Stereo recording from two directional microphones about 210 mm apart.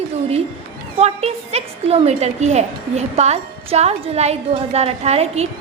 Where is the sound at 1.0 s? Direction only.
30° right (ahead or behind).